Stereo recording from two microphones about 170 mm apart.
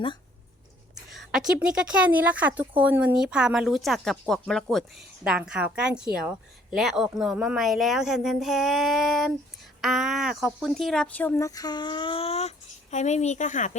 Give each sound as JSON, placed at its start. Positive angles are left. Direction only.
{"t": 1.1, "sound": "speech", "side_deg": -5}